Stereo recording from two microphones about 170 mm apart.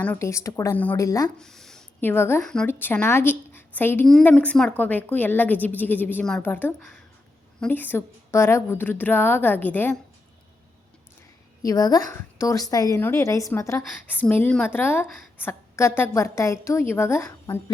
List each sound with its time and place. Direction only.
0.0 s a woman's voice: 15° left (ahead or behind)
1.4 s a woman's voice: centre (ahead or behind)
11.6 s a woman's voice: 20° left (ahead or behind)